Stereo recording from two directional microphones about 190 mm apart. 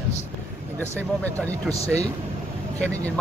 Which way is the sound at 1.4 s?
10° left (ahead or behind).